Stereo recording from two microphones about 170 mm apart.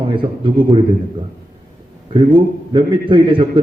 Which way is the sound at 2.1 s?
30° right (ahead or behind).